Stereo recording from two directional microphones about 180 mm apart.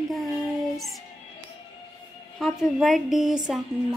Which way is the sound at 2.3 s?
Centre (ahead or behind).